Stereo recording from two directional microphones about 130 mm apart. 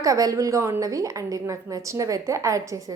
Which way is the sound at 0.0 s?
25° right (ahead or behind).